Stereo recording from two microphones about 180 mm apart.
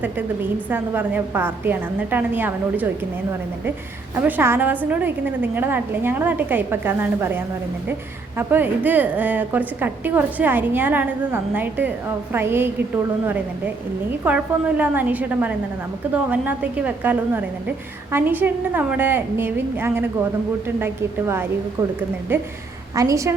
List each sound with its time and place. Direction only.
0.7 s a woman's voice: 10° right (ahead or behind)
4.1 s a woman's voice: 10° right (ahead or behind)
14.3 s a woman's voice: 10° right (ahead or behind)